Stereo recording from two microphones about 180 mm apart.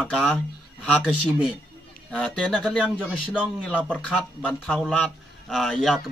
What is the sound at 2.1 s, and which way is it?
Speech, centre (ahead or behind).